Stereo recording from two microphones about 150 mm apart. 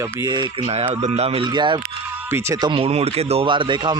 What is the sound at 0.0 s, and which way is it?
Speech, 15° right (ahead or behind).